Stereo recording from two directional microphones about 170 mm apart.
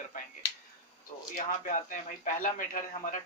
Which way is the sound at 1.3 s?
50° left (ahead or behind).